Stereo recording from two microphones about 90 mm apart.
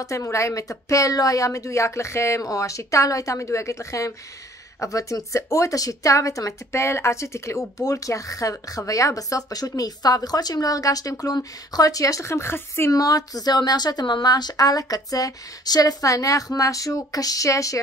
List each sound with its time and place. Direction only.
0.0 s speech: 35° left (ahead or behind)
12.9 s speech: 40° left (ahead or behind)